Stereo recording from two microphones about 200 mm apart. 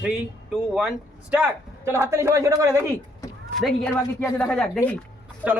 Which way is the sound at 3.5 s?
Centre (ahead or behind).